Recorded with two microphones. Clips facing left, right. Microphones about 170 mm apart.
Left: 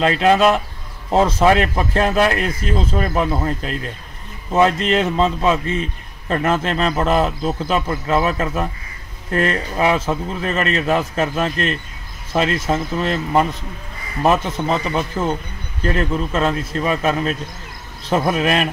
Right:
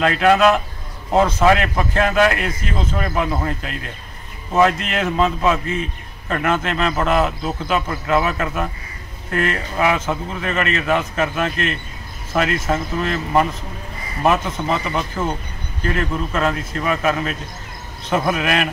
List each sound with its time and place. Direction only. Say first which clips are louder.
0.0 s a man's voice: even; 30° left (ahead or behind)